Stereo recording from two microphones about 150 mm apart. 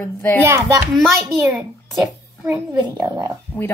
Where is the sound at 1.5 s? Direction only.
5° right (ahead or behind).